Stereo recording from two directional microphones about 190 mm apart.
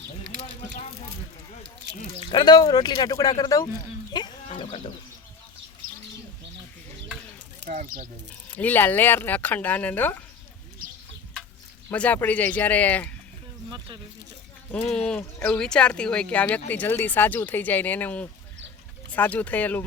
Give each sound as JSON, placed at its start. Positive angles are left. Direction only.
{"t": 2.3, "sound": "speech", "side_deg": 20}
{"t": 4.1, "sound": "goat", "side_deg": 25}
{"t": 7.7, "sound": "speech", "side_deg": -45}
{"t": 8.3, "sound": "speech", "side_deg": 10}
{"t": 11.9, "sound": "speech", "side_deg": 10}
{"t": 13.7, "sound": "speech", "side_deg": -20}
{"t": 14.7, "sound": "speech", "side_deg": 5}